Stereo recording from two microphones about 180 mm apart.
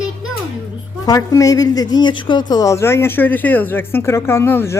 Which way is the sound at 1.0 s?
20° left (ahead or behind).